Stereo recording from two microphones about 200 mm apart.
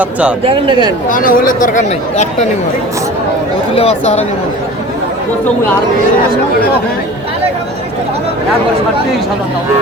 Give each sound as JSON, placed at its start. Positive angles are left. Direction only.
{"t": 0.0, "sound": "speech", "side_deg": -5}
{"t": 0.4, "sound": "speech", "side_deg": -25}
{"t": 1.1, "sound": "speech", "side_deg": 45}
{"t": 3.8, "sound": "speech", "side_deg": 30}